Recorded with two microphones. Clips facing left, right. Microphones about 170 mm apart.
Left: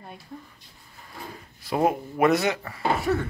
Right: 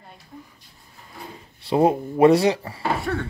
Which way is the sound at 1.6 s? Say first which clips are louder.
Right 5 dB; 30° right (ahead or behind).